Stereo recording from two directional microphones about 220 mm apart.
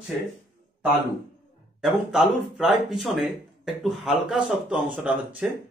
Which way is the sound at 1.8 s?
Centre (ahead or behind).